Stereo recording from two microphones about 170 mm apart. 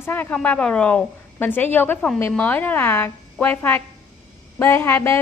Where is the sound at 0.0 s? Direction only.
10° left (ahead or behind).